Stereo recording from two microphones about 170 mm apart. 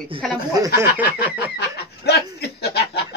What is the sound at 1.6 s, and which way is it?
Speech, 75° left (ahead or behind).